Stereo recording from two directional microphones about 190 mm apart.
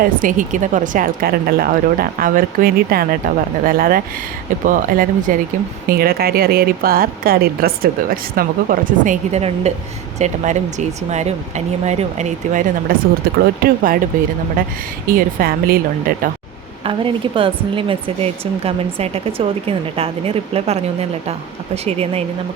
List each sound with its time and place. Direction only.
0.0 s speech: 45° right (ahead or behind)
15.0 s speech: 50° right (ahead or behind)
16.8 s speech: 25° right (ahead or behind)